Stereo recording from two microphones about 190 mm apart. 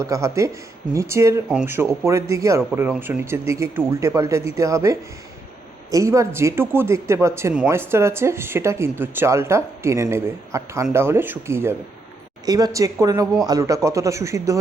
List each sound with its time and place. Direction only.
0.0 s speech: 15° right (ahead or behind)